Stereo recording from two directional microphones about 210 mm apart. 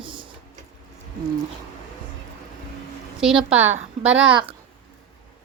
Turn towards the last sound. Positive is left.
turn(degrees=-5)  # may be behind; listen again after turning